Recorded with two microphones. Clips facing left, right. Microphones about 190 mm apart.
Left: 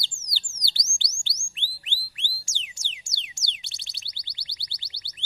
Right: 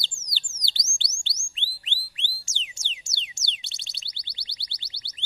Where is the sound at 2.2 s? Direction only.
20° right (ahead or behind).